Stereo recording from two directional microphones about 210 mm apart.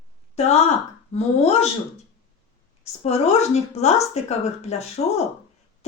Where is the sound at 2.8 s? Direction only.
30° left (ahead or behind).